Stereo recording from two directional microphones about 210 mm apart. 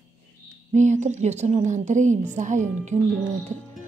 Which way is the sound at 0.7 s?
35° right (ahead or behind).